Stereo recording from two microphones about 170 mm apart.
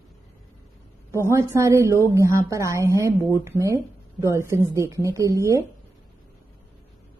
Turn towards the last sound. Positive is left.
turn(degrees=-15)  # may be behind; listen again after turning